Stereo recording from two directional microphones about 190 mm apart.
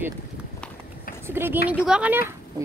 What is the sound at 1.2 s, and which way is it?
Speech, 10° right (ahead or behind).